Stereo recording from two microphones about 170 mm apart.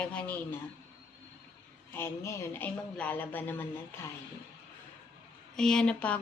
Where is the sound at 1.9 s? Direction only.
15° left (ahead or behind).